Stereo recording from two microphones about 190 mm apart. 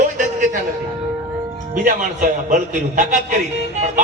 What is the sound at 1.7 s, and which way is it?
Music, 45° right (ahead or behind).